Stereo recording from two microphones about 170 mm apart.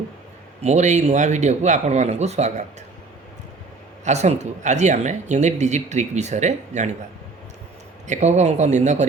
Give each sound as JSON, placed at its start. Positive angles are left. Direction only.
{"t": 0.6, "sound": "speech", "side_deg": -40}
{"t": 4.0, "sound": "speech", "side_deg": -40}
{"t": 8.0, "sound": "speech", "side_deg": -45}